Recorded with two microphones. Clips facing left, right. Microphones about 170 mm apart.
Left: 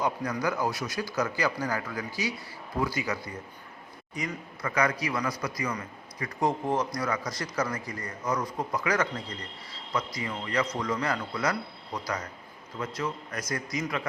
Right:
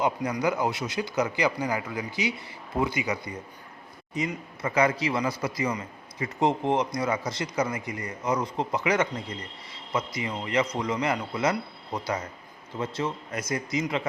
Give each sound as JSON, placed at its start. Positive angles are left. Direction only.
{"t": 0.0, "sound": "a man's voice", "side_deg": -20}